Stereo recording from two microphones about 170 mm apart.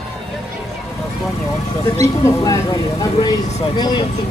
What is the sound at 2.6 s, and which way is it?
Speech, 35° left (ahead or behind).